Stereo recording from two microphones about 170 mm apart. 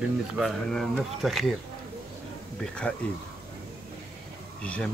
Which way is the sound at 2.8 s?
10° left (ahead or behind).